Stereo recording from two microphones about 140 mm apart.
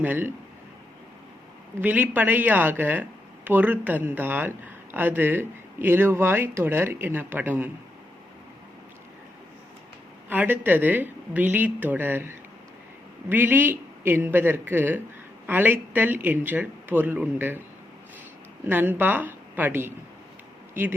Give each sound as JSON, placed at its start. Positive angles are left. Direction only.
{"t": 0.0, "sound": "speech", "side_deg": -15}
{"t": 1.8, "sound": "speech", "side_deg": -15}
{"t": 10.2, "sound": "speech", "side_deg": -15}
{"t": 18.6, "sound": "speech", "side_deg": -15}